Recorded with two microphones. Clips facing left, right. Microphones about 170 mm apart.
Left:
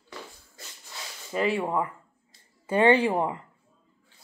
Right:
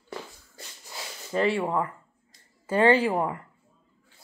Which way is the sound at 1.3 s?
15° left (ahead or behind).